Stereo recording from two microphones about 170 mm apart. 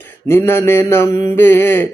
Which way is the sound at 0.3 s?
15° left (ahead or behind).